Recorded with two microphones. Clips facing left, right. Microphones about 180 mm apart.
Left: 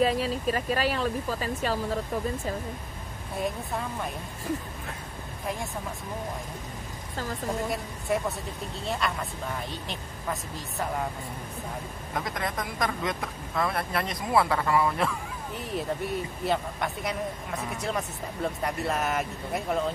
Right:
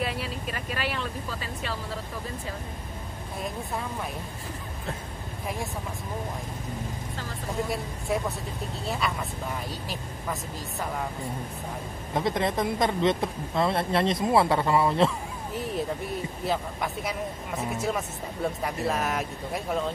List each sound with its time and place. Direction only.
0.0 s speech: 40° left (ahead or behind)
8.1 s speech: centre (ahead or behind)
12.1 s speech: 25° right (ahead or behind)
15.5 s speech: centre (ahead or behind)